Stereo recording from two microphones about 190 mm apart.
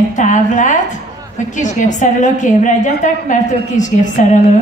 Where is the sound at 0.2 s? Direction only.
40° left (ahead or behind).